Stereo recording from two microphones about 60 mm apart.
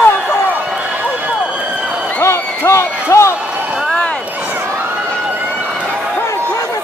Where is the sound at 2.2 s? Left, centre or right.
Left.